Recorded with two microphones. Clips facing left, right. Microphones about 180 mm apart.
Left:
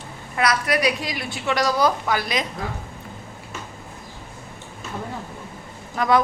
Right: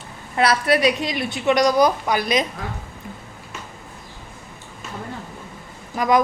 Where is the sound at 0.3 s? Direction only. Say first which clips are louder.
Right 3 dB; 30° right (ahead or behind).